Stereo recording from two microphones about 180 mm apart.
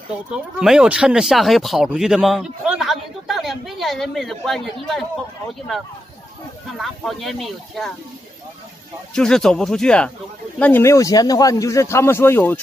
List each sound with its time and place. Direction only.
0.3 s speech: 5° right (ahead or behind)
6.8 s speech: centre (ahead or behind)
9.1 s speech: 5° left (ahead or behind)